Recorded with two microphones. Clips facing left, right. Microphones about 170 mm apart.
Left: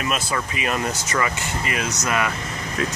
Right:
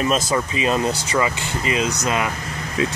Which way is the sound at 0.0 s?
30° right (ahead or behind).